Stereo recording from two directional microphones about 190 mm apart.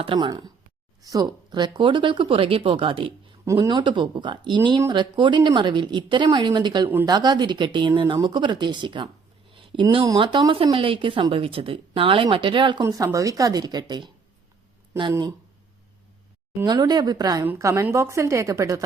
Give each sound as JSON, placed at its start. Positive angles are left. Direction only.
{"t": 0.0, "sound": "speech", "side_deg": -25}
{"t": 16.6, "sound": "a woman's voice", "side_deg": -20}